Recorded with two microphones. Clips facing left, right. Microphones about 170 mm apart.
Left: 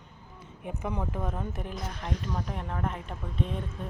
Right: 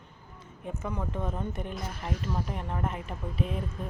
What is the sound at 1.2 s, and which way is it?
Speech, centre (ahead or behind).